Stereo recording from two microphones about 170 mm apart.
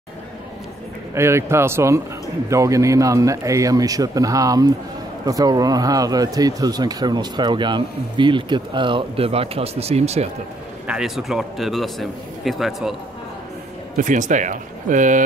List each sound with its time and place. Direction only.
1.1 s speech: 15° right (ahead or behind); by 10.2 s 40° right (ahead or behind)
10.9 s a man's voice: 5° right (ahead or behind)
13.9 s speech: 50° right (ahead or behind)